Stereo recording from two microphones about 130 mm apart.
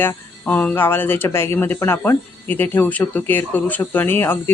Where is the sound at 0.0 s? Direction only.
15° left (ahead or behind).